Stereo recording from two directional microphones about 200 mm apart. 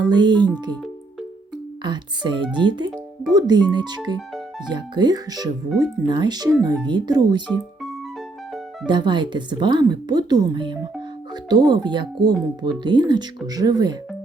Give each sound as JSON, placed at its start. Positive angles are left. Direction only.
{"t": 0.0, "sound": "speech", "side_deg": -20}
{"t": 1.8, "sound": "speech", "side_deg": -20}
{"t": 8.9, "sound": "speech", "side_deg": -25}